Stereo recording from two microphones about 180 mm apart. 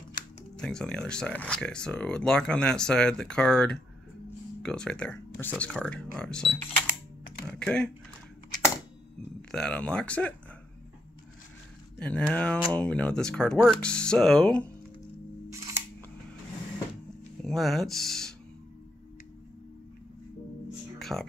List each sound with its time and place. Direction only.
0.6 s speech: 5° left (ahead or behind)
7.5 s speech: 5° left (ahead or behind)
9.5 s speech: 5° left (ahead or behind)
12.0 s speech: 5° left (ahead or behind)
15.5 s camera: 15° right (ahead or behind)
17.4 s speech: centre (ahead or behind)
21.0 s music: centre (ahead or behind)